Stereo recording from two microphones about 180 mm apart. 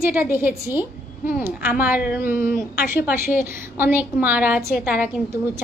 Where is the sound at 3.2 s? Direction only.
10° right (ahead or behind).